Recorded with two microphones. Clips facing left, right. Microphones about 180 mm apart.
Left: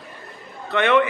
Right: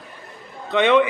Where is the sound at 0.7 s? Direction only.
15° right (ahead or behind).